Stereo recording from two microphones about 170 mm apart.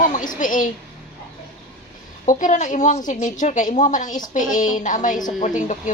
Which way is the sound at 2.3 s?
50° left (ahead or behind).